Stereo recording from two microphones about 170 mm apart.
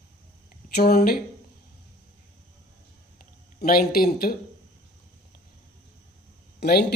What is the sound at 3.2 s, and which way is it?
Speech, 60° left (ahead or behind).